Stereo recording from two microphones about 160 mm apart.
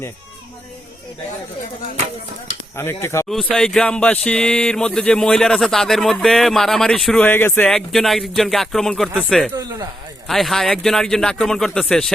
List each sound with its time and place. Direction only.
2.7 s speech: 15° left (ahead or behind)
3.2 s speech: 5° left (ahead or behind)